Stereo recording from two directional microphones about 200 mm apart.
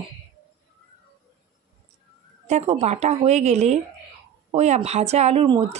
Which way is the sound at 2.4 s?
35° right (ahead or behind).